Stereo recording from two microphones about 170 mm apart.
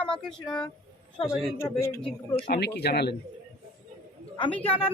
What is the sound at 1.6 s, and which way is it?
Speech, 15° left (ahead or behind).